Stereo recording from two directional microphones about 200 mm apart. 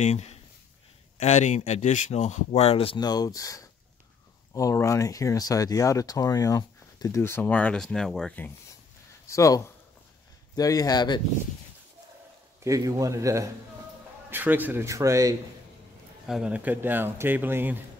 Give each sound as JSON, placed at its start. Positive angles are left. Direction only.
{"t": 0.0, "sound": "speech", "side_deg": 35}
{"t": 9.3, "sound": "speech", "side_deg": 15}
{"t": 12.6, "sound": "a man's voice", "side_deg": -15}
{"t": 16.3, "sound": "a man's voice", "side_deg": -5}